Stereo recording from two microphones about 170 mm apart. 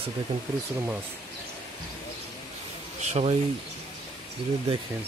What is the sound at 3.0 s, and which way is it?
Speech, 40° right (ahead or behind).